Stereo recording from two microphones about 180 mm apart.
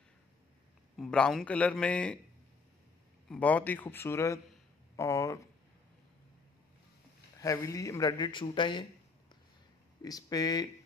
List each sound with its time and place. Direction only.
0.9 s a man's voice: 5° left (ahead or behind)
3.3 s a man's voice: 10° left (ahead or behind)
7.3 s speech: 15° left (ahead or behind)
10.0 s speech: 20° left (ahead or behind)